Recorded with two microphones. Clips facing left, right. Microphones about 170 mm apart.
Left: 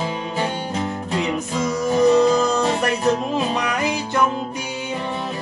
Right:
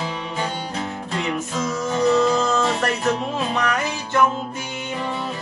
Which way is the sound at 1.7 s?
15° left (ahead or behind).